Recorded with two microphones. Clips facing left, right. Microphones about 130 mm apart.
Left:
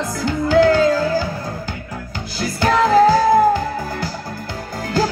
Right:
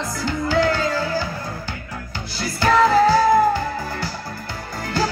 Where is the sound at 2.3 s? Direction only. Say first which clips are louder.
Even; 45° left (ahead or behind).